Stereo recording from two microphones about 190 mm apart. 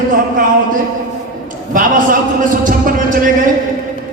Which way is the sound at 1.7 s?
45° right (ahead or behind).